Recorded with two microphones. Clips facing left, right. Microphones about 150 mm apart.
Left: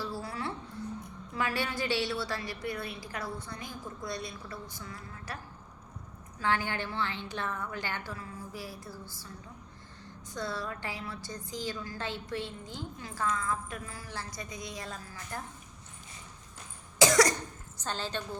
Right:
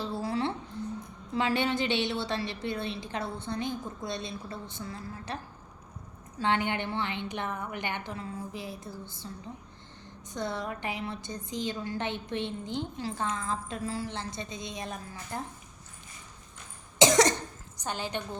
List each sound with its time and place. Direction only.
0.0 s music: 25° right (ahead or behind)
1.3 s a woman's voice: 25° right (ahead or behind)
6.4 s a woman's voice: 25° right (ahead or behind)
17.0 s cough: 20° right (ahead or behind)
17.7 s a woman's voice: 15° right (ahead or behind)